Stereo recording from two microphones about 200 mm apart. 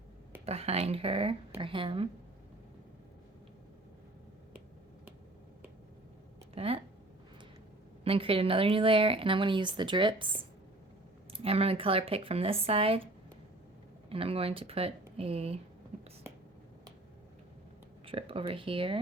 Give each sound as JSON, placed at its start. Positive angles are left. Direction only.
{"t": 0.4, "sound": "speech", "side_deg": -30}
{"t": 6.5, "sound": "speech", "side_deg": -30}
{"t": 8.0, "sound": "speech", "side_deg": -30}
{"t": 14.1, "sound": "speech", "side_deg": -30}
{"t": 18.0, "sound": "speech", "side_deg": -25}